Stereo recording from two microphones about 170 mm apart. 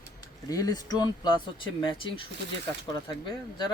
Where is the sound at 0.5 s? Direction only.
20° left (ahead or behind).